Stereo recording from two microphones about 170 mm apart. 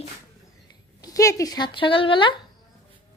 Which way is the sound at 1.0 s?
20° left (ahead or behind).